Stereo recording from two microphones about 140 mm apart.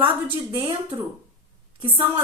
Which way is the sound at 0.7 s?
35° right (ahead or behind).